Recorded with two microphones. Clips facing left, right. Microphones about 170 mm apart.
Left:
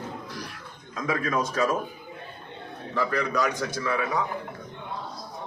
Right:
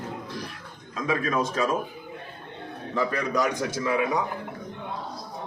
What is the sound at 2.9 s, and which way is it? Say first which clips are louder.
A man's voice: right 1 dB; 20° right (ahead or behind).